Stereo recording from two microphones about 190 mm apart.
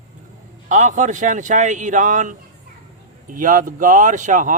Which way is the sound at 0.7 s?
40° right (ahead or behind).